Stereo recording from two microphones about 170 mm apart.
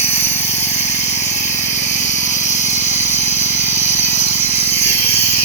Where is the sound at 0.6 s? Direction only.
40° left (ahead or behind).